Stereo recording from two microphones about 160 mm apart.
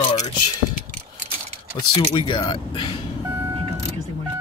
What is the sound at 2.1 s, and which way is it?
Speech, 30° left (ahead or behind).